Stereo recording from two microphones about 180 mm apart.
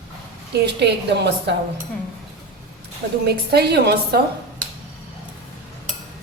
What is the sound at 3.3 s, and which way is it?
Speech, 65° right (ahead or behind).